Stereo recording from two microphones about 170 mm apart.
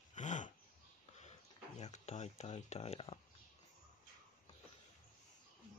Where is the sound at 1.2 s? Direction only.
40° left (ahead or behind).